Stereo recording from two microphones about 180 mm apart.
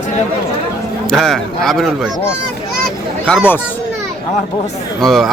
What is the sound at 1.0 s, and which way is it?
Speech, centre (ahead or behind).